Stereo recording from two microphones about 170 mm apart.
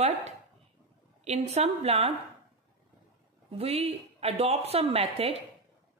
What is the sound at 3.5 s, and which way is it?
A woman's voice, 35° right (ahead or behind).